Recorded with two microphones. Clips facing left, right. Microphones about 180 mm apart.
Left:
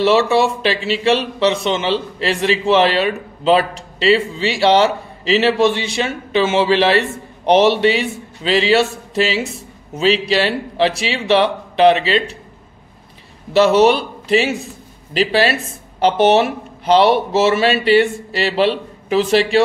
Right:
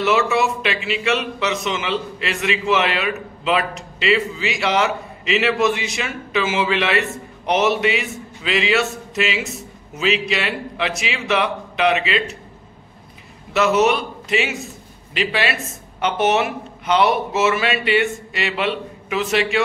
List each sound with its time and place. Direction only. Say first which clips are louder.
0.0 s a man's voice: left 5 dB; 30° left (ahead or behind)
13.5 s a man's voice: left 5 dB; 30° left (ahead or behind)